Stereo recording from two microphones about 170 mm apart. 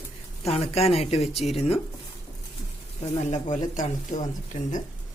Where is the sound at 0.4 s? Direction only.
40° left (ahead or behind).